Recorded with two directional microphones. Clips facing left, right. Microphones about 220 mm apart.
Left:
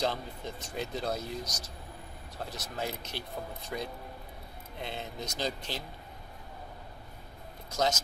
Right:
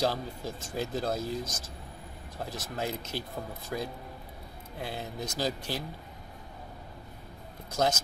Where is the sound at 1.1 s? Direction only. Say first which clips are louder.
Right 4 dB; 50° right (ahead or behind).